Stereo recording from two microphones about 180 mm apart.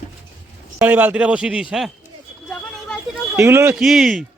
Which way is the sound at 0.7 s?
10° right (ahead or behind).